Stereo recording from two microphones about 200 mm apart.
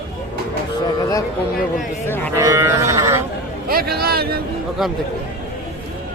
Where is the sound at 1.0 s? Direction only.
15° left (ahead or behind).